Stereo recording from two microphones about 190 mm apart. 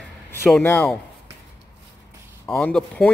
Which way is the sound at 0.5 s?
10° left (ahead or behind).